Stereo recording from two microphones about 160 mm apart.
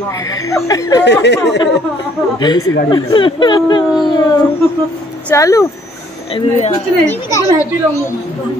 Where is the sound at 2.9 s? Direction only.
30° left (ahead or behind).